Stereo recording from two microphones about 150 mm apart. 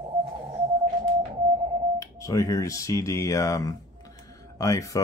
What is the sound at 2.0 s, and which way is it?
Speech, 20° left (ahead or behind).